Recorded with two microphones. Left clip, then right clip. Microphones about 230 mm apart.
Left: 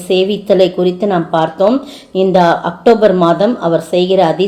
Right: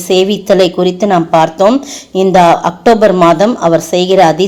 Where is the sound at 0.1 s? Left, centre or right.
Right.